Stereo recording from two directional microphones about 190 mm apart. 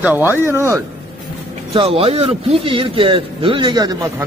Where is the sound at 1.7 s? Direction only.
30° right (ahead or behind).